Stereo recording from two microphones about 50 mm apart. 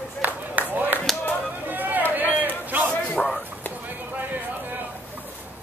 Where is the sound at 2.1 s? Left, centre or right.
Right.